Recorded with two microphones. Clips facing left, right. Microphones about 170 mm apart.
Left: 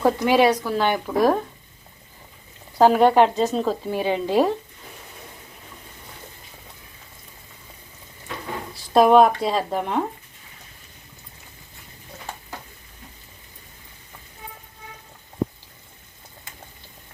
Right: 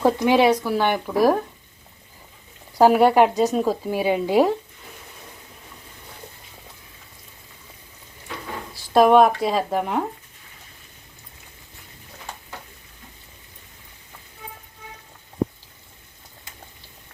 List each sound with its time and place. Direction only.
0.0 s speech: 15° right (ahead or behind)
2.7 s speech: 10° right (ahead or behind)
8.9 s speech: centre (ahead or behind)